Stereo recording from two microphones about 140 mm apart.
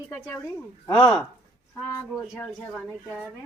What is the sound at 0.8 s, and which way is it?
Speech, 30° left (ahead or behind).